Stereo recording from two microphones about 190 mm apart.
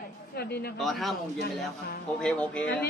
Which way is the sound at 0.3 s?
55° left (ahead or behind).